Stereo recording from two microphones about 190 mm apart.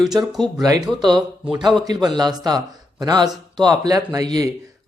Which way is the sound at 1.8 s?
20° right (ahead or behind).